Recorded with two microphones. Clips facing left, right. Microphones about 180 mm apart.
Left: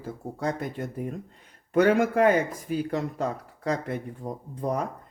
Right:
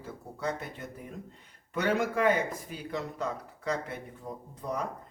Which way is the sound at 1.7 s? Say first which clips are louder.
Left 8 dB; 50° left (ahead or behind).